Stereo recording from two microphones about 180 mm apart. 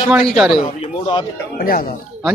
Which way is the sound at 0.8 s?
25° left (ahead or behind).